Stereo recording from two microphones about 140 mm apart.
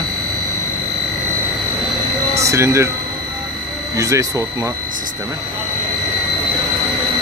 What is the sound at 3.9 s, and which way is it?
Speech, 25° right (ahead or behind).